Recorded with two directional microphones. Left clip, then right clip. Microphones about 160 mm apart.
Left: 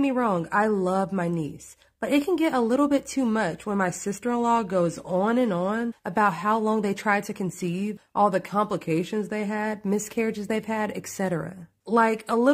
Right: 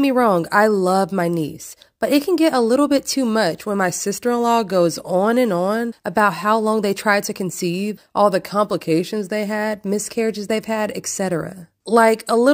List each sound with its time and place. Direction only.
0.0 s speech: 40° right (ahead or behind)